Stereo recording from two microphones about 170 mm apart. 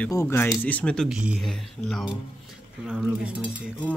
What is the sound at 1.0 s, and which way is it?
Speech, 5° right (ahead or behind).